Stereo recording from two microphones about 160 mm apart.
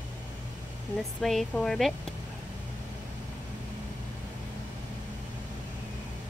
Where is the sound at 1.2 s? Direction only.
Centre (ahead or behind).